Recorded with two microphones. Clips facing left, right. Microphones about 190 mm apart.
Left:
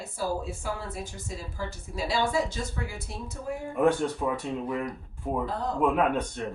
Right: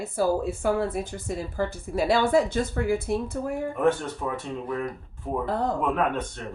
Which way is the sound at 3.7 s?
10° left (ahead or behind).